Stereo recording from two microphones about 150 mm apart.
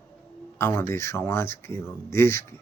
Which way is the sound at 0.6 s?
15° left (ahead or behind).